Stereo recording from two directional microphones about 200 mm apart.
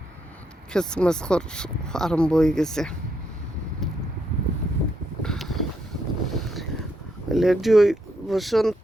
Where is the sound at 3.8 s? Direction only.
Centre (ahead or behind).